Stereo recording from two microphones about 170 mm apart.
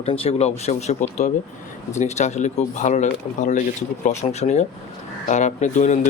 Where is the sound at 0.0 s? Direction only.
35° left (ahead or behind).